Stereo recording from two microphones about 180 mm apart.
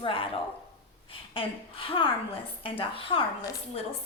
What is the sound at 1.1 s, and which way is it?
A woman's voice, 30° left (ahead or behind).